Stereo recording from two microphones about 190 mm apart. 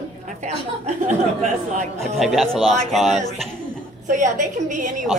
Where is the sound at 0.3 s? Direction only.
40° right (ahead or behind).